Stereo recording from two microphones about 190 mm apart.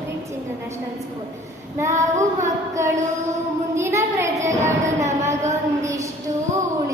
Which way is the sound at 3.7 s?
15° right (ahead or behind).